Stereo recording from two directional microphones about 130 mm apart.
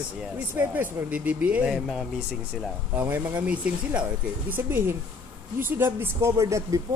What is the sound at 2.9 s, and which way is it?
Speech, 15° right (ahead or behind).